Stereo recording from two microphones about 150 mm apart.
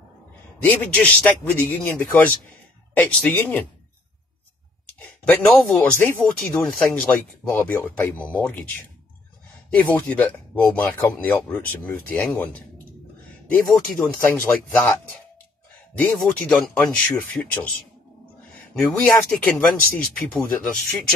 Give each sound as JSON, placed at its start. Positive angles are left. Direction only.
{"t": 0.7, "sound": "speech", "side_deg": 15}
{"t": 4.8, "sound": "speech", "side_deg": 10}
{"t": 9.7, "sound": "speech", "side_deg": 10}
{"t": 13.7, "sound": "speech", "side_deg": 0}
{"t": 18.9, "sound": "speech", "side_deg": 5}